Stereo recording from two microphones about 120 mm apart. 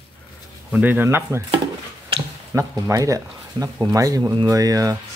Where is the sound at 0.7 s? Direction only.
15° right (ahead or behind).